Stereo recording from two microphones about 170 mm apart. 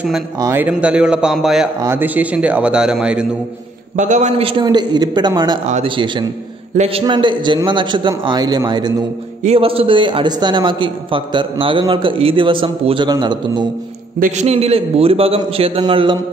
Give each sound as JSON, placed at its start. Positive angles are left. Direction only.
{"t": 0.4, "sound": "a man's voice", "side_deg": -15}
{"t": 1.8, "sound": "a man's voice", "side_deg": -15}
{"t": 3.9, "sound": "a man's voice", "side_deg": -45}
{"t": 4.5, "sound": "a man's voice", "side_deg": -25}
{"t": 9.4, "sound": "a man's voice", "side_deg": -35}
{"t": 14.2, "sound": "a man's voice", "side_deg": -40}